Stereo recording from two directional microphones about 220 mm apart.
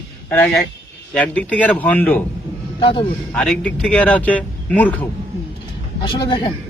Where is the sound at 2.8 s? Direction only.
25° left (ahead or behind).